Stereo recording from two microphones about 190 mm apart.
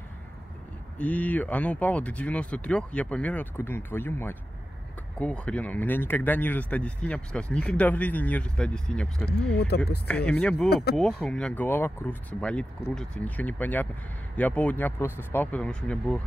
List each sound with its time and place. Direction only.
0.9 s speech: 5° left (ahead or behind)
9.7 s speech: 60° left (ahead or behind)
10.0 s speech: 5° left (ahead or behind)
10.7 s speech: 55° left (ahead or behind)
11.0 s speech: 5° left (ahead or behind)